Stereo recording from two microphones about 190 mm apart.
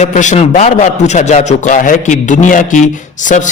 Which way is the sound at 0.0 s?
40° left (ahead or behind).